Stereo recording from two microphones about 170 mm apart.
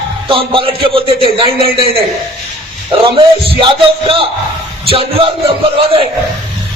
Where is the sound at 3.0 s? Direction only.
30° right (ahead or behind).